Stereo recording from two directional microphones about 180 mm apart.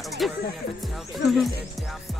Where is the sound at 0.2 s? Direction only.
Centre (ahead or behind).